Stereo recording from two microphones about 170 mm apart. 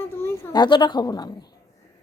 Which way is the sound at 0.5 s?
25° left (ahead or behind).